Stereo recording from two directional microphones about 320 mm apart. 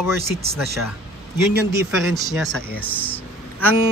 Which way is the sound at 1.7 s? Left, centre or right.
Centre.